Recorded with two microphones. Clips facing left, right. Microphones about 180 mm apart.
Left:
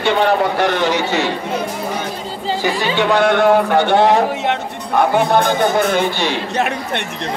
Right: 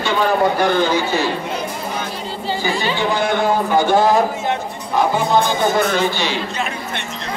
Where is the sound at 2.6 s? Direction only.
70° left (ahead or behind).